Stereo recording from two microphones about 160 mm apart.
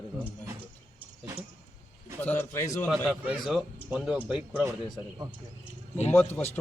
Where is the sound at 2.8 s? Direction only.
Centre (ahead or behind).